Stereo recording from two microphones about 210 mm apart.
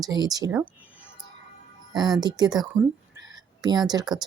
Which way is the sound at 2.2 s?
20° right (ahead or behind).